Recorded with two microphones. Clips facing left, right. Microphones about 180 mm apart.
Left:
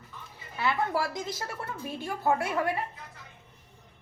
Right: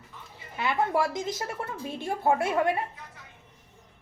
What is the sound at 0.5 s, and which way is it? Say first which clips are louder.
A woman's voice: right 2 dB; 20° right (ahead or behind).